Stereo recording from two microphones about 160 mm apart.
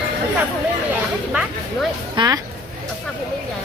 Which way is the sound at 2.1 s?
25° right (ahead or behind).